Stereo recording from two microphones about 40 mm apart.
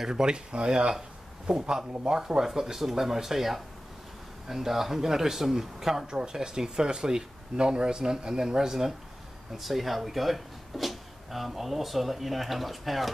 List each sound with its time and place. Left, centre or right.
0.0 s speech: centre